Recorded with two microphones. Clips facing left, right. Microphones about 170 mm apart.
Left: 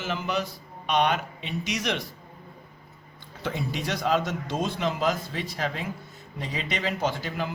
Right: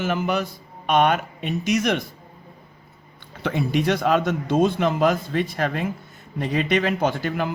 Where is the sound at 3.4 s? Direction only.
60° right (ahead or behind).